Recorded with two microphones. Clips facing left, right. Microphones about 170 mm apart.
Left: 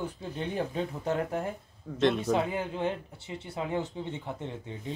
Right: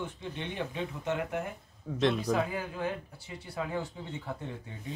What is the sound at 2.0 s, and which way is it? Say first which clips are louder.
Speech: left 2 dB; centre (ahead or behind).